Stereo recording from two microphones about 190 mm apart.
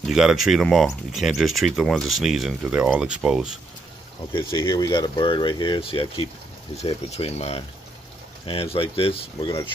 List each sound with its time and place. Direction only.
0.0 s speech: centre (ahead or behind)
4.3 s speech: 25° left (ahead or behind)